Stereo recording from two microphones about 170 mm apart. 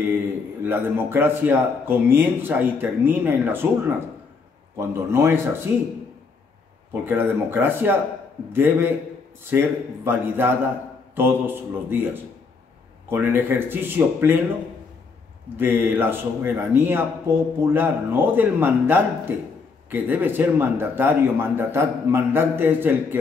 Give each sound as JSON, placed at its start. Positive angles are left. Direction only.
{"t": 0.7, "sound": "speech", "side_deg": -15}
{"t": 6.9, "sound": "speech", "side_deg": -15}
{"t": 15.5, "sound": "speech", "side_deg": -10}